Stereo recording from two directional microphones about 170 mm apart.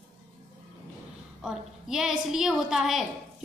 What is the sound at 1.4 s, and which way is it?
A woman's voice, 5° right (ahead or behind).